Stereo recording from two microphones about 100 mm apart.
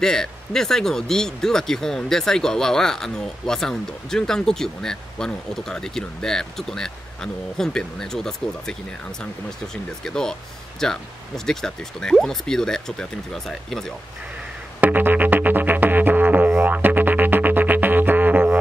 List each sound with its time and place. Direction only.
0.0 s speech: 5° left (ahead or behind)
10.0 s speech: 5° left (ahead or behind)
14.8 s music: 15° right (ahead or behind)